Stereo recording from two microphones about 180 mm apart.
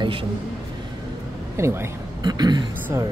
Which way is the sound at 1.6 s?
15° right (ahead or behind).